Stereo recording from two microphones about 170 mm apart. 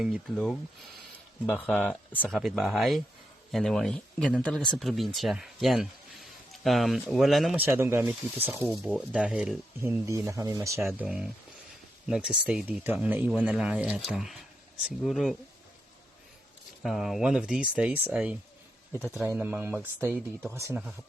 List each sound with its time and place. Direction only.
0.0 s speech: centre (ahead or behind)
10.1 s speech: 20° right (ahead or behind)
10.8 s speech: 5° right (ahead or behind)
16.8 s speech: centre (ahead or behind)
19.2 s speech: 10° right (ahead or behind)